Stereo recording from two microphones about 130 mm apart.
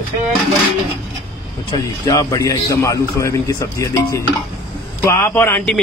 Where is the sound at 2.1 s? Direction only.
25° left (ahead or behind).